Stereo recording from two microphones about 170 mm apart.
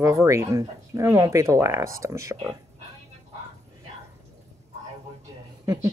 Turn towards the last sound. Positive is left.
turn(degrees=-20)  # may be behind; listen again after turning